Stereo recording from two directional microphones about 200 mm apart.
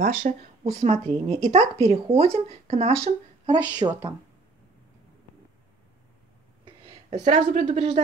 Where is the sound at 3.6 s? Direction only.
10° right (ahead or behind).